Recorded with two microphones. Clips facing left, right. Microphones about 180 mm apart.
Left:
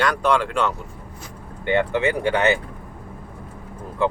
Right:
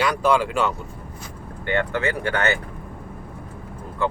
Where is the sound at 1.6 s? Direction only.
20° left (ahead or behind).